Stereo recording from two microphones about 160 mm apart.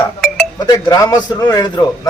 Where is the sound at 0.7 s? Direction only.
25° left (ahead or behind).